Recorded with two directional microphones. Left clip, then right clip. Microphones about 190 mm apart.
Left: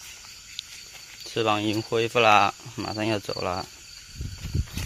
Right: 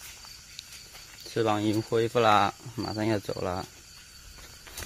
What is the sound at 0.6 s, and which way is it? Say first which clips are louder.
Walk: left 8 dB; 5° right (ahead or behind).